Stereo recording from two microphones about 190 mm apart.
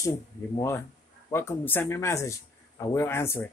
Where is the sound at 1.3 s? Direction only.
10° left (ahead or behind).